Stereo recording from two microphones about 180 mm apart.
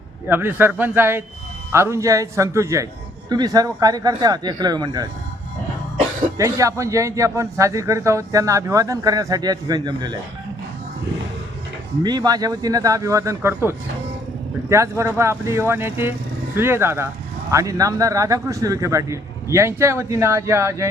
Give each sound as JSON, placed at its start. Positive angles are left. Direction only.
{"t": 0.3, "sound": "a man's voice", "side_deg": -10}
{"t": 6.3, "sound": "a man's voice", "side_deg": -15}
{"t": 12.0, "sound": "a man's voice", "side_deg": -20}